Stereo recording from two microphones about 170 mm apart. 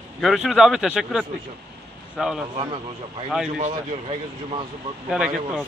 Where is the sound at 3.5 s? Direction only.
40° right (ahead or behind).